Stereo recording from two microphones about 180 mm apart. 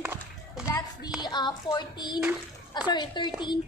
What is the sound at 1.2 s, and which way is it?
Speech, 25° left (ahead or behind).